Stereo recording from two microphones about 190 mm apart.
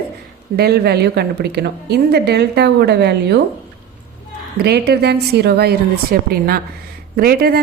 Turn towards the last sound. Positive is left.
turn(degrees=-55)  # may be behind; listen again after turning